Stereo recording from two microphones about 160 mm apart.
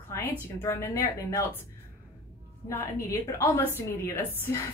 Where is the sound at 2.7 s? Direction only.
20° left (ahead or behind).